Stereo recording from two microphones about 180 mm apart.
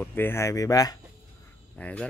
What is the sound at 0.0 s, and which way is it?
Speech, 10° left (ahead or behind).